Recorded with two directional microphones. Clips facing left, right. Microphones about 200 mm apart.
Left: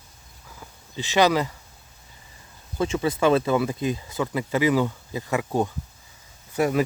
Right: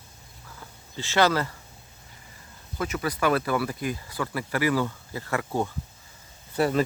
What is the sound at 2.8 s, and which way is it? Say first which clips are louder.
Speech: left 5 dB; 25° left (ahead or behind).